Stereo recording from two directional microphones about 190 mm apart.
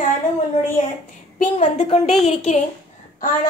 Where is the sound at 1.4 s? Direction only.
35° left (ahead or behind).